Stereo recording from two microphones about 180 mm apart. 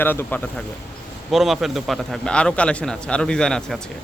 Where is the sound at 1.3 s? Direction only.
Centre (ahead or behind).